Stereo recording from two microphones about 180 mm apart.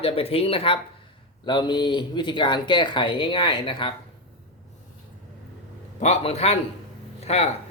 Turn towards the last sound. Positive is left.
turn(degrees=35)  # may be behind; listen again after turning